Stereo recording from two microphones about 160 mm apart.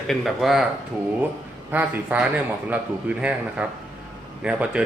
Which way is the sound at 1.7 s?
10° right (ahead or behind).